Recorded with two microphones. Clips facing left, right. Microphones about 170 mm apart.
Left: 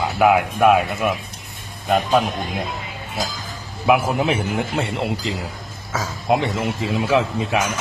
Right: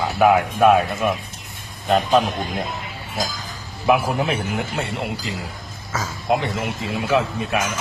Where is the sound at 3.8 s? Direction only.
20° left (ahead or behind).